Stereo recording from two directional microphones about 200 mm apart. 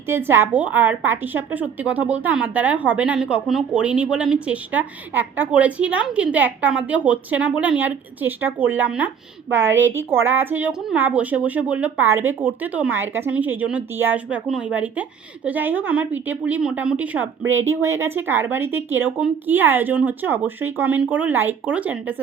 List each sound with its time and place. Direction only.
0.1 s a woman's voice: 10° right (ahead or behind)
17.4 s speech: 75° right (ahead or behind)
17.8 s a woman's voice: 15° right (ahead or behind)